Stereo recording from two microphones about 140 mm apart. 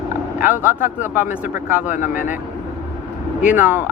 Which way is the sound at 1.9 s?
75° left (ahead or behind).